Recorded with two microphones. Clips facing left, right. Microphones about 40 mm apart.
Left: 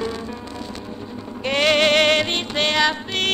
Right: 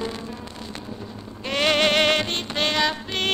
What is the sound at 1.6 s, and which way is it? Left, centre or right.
Music, centre.